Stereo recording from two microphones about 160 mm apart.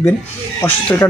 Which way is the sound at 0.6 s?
10° left (ahead or behind).